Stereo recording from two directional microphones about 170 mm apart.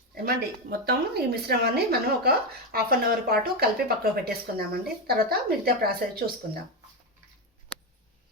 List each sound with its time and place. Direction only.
0.1 s a woman's voice: 65° right (ahead or behind)